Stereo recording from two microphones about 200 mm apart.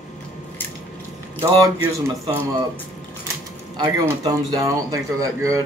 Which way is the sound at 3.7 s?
20° right (ahead or behind).